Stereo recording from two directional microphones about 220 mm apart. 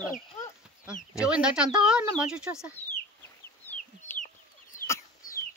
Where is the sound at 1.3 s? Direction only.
5° right (ahead or behind).